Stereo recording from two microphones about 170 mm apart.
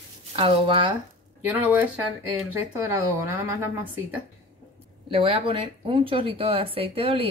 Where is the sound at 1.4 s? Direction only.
10° right (ahead or behind).